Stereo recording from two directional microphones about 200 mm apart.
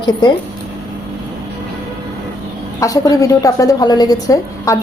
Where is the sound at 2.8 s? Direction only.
15° left (ahead or behind).